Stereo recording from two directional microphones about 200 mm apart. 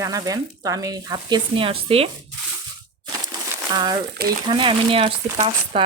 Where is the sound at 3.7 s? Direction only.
20° right (ahead or behind).